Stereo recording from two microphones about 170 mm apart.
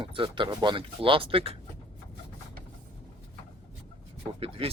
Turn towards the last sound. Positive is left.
turn(degrees=-35)  # may be behind; listen again after turning